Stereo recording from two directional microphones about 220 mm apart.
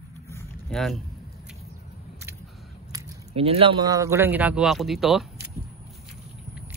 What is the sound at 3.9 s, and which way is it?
Speech, 15° right (ahead or behind).